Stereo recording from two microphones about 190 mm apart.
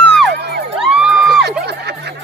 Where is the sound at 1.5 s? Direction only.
60° right (ahead or behind).